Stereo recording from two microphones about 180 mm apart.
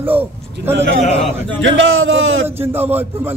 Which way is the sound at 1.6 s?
90° right.